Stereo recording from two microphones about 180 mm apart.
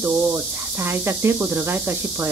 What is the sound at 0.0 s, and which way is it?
Speech, 10° right (ahead or behind).